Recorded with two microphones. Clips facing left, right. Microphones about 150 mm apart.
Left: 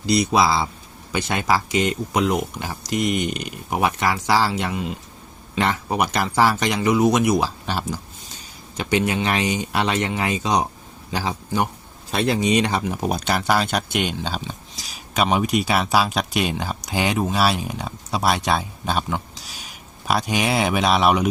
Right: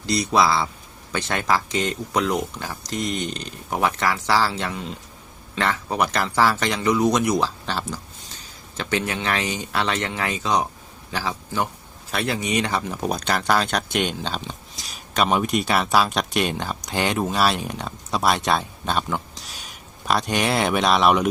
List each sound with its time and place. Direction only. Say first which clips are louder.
0.0 s a man's voice: left 2 dB; 15° left (ahead or behind)